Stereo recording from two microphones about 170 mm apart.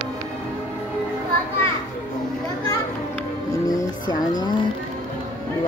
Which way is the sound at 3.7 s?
25° left (ahead or behind).